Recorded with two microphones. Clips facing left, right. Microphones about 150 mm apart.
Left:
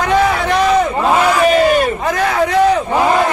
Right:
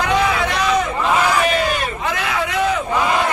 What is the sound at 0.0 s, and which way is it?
Crowd, 45° left (ahead or behind).